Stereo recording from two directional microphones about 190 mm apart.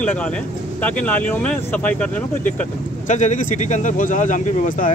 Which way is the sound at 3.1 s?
40° left (ahead or behind).